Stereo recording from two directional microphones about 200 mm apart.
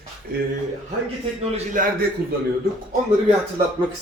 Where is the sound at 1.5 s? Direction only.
40° right (ahead or behind).